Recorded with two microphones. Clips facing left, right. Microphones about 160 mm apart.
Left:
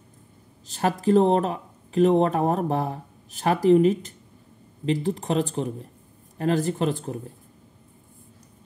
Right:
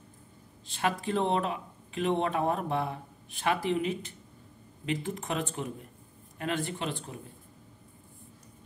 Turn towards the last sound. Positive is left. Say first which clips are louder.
# left 10 dB
turn(degrees=45)  # may be behind; listen again after turning